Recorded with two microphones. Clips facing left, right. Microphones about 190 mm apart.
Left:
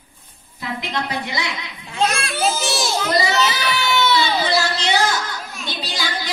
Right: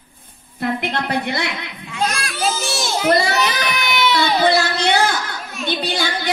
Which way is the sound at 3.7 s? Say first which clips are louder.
Left 1 dB; 15° right (ahead or behind).